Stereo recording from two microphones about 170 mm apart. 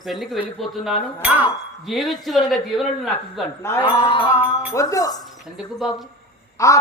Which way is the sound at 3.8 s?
30° left (ahead or behind).